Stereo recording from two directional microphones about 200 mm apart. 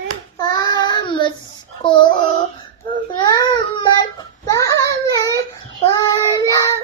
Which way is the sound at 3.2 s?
20° left (ahead or behind).